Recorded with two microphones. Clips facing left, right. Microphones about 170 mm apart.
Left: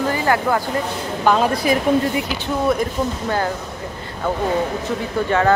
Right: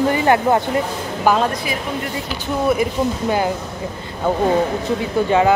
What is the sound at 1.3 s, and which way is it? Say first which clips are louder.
Speech: even; 5° right (ahead or behind).